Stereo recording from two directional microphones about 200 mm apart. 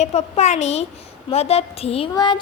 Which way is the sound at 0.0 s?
35° left (ahead or behind).